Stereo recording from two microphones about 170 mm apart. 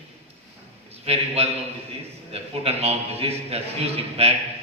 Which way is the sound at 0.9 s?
35° right (ahead or behind).